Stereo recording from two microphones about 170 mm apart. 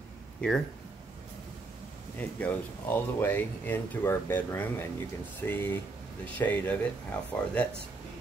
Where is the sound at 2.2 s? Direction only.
10° left (ahead or behind).